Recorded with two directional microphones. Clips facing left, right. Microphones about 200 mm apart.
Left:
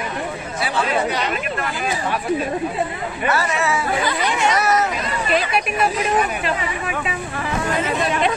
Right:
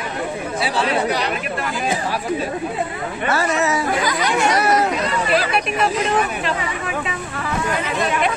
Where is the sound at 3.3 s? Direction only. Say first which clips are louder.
Right 2 dB; 40° right (ahead or behind).